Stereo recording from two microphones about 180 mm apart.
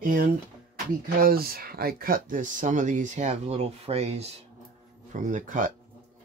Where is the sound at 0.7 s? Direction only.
55° right (ahead or behind).